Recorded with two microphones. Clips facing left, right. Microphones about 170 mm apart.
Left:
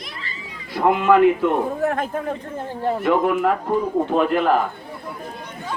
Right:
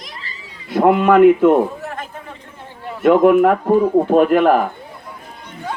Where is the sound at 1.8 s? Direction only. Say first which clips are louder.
Left 8 dB; 55° left (ahead or behind).